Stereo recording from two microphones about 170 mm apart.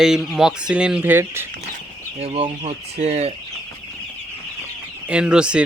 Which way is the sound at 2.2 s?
35° right (ahead or behind).